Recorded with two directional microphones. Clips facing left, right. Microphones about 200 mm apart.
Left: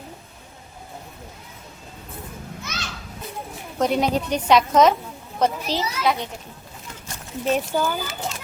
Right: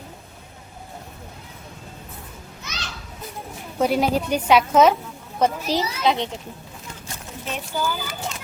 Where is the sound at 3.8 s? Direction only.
5° right (ahead or behind).